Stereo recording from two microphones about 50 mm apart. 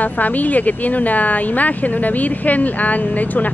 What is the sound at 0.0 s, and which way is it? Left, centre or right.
Speech, left.